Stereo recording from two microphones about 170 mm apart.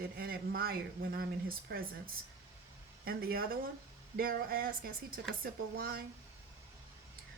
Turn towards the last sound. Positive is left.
turn(degrees=-60)  # may be behind; listen again after turning